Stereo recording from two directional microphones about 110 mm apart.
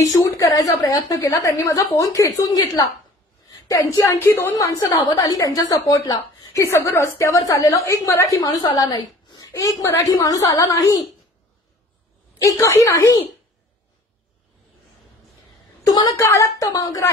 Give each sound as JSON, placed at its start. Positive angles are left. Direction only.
{"t": 0.0, "sound": "a woman's voice", "side_deg": 30}
{"t": 4.7, "sound": "a woman's voice", "side_deg": 40}
{"t": 8.4, "sound": "a woman's voice", "side_deg": 40}
{"t": 12.4, "sound": "a woman's voice", "side_deg": 25}
{"t": 15.8, "sound": "a sound", "side_deg": 35}
{"t": 16.2, "sound": "a woman's voice", "side_deg": 25}